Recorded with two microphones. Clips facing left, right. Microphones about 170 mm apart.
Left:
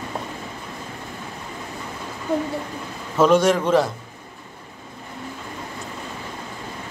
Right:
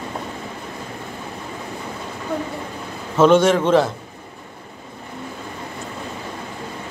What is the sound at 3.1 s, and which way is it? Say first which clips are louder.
Speech: right 3 dB; centre (ahead or behind).